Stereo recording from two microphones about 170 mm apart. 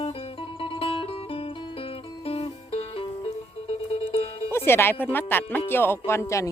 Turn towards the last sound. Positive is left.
turn(degrees=15)  # may be behind; listen again after turning